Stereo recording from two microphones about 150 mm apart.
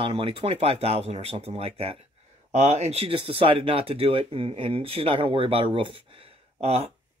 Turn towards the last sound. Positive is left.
turn(degrees=-40)  # may be behind; listen again after turning